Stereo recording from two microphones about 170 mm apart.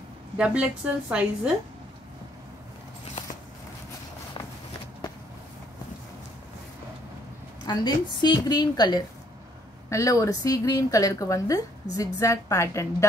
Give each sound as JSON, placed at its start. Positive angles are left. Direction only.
{"t": 0.4, "sound": "a woman's voice", "side_deg": -10}
{"t": 7.6, "sound": "a woman's voice", "side_deg": 25}